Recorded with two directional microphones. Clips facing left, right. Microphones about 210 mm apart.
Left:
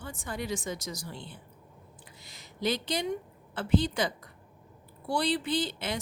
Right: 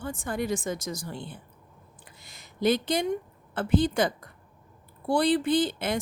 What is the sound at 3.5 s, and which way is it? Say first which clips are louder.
Speech: right 4 dB; 50° right (ahead or behind).